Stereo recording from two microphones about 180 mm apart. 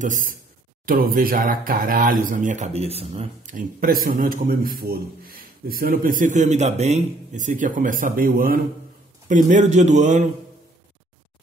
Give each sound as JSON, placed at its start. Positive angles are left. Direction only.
{"t": 0.0, "sound": "speech", "side_deg": -45}